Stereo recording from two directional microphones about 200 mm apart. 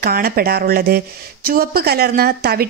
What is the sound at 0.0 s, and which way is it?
Speech, 50° right (ahead or behind).